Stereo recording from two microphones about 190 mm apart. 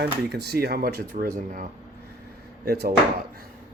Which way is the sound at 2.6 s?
55° right (ahead or behind).